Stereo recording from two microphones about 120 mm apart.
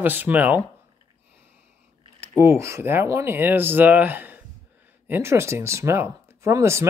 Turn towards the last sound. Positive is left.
turn(degrees=-25)  # may be behind; listen again after turning